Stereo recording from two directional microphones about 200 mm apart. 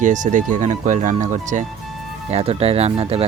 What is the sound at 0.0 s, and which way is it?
Speech, 40° right (ahead or behind).